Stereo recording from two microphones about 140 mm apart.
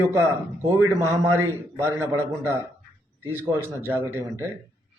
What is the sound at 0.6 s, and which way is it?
A man's voice, 20° right (ahead or behind).